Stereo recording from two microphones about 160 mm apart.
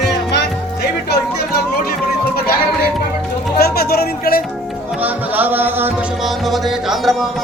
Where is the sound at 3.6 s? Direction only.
70° left (ahead or behind).